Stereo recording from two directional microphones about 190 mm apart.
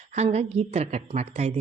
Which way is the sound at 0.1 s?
35° right (ahead or behind).